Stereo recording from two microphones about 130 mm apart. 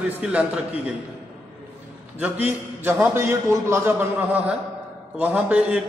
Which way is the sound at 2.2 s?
15° right (ahead or behind).